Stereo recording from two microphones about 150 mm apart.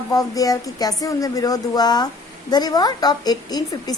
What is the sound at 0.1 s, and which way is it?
A woman's voice, 25° left (ahead or behind).